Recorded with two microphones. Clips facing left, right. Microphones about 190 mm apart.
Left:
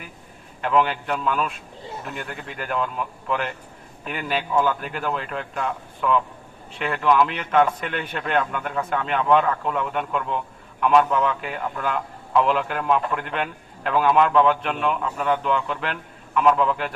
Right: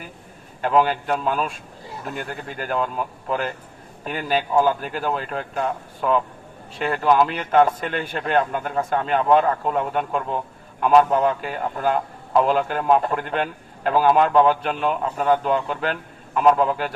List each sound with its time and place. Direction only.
0.6 s speech: 40° right (ahead or behind)